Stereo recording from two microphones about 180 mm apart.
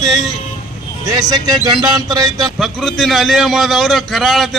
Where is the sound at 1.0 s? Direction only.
20° right (ahead or behind).